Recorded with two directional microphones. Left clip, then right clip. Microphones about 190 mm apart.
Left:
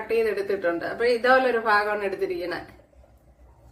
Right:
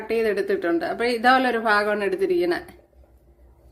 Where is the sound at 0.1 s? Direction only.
45° right (ahead or behind).